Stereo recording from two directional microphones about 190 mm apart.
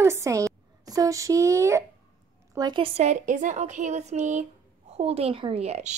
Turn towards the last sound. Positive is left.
turn(degrees=-35)  # may be behind; listen again after turning